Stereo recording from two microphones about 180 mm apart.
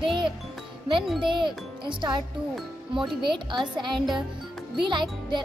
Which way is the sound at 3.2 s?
25° right (ahead or behind).